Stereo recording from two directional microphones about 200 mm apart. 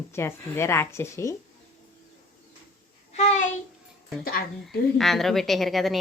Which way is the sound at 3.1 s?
35° left (ahead or behind).